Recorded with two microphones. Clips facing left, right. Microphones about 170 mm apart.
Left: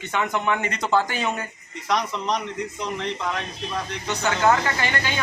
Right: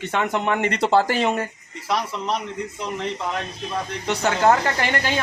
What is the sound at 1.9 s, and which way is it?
Speech, 5° right (ahead or behind).